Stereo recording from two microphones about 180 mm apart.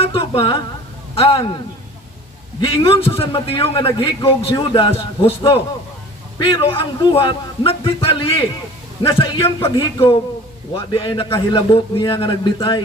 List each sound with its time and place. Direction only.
0.0 s a sound: 30° left (ahead or behind)
1.1 s a man's voice: 30° left (ahead or behind)
2.6 s a man's voice: 30° left (ahead or behind)